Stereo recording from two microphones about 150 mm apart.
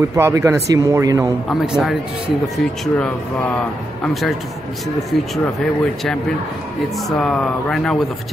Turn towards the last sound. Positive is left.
turn(degrees=5)  # may be behind; listen again after turning